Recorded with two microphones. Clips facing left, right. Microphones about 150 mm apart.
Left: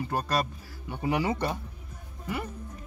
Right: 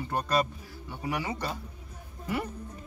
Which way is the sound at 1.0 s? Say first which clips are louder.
Left 5 dB; 30° left (ahead or behind).